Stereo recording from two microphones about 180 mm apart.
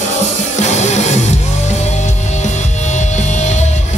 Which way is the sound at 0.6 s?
40° left (ahead or behind).